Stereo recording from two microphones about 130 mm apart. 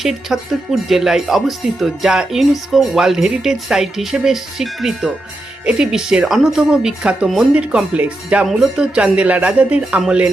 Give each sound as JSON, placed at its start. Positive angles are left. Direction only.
{"t": 0.0, "sound": "speech", "side_deg": 0}